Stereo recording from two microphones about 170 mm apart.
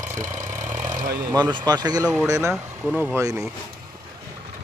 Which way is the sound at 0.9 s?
50° right (ahead or behind).